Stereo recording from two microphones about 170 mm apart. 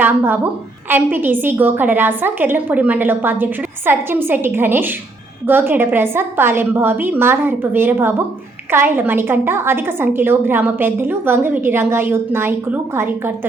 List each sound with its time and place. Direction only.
0.0 s a woman's voice: 10° right (ahead or behind)